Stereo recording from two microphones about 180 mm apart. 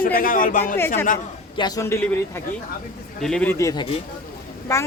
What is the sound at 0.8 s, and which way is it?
Speech, 15° left (ahead or behind).